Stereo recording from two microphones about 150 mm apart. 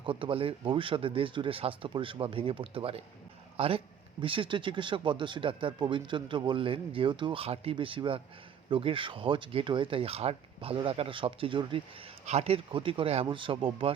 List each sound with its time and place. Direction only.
0.0 s speech: 35° right (ahead or behind)